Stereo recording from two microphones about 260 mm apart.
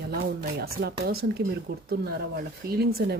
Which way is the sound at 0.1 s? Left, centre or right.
Right.